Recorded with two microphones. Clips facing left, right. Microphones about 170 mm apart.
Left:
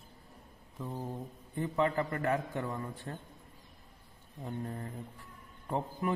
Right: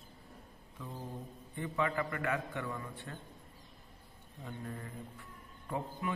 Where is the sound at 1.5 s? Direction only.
40° left (ahead or behind).